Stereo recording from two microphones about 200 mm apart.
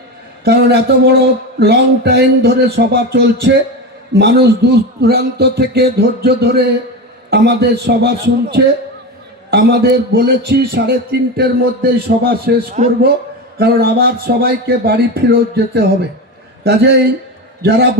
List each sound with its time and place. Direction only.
0.4 s a man's voice: 55° right (ahead or behind)